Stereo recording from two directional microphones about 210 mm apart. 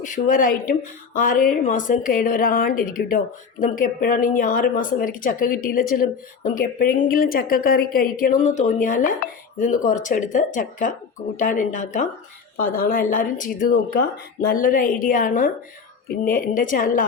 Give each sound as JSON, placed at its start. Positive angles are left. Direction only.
{"t": 0.0, "sound": "speech", "side_deg": 40}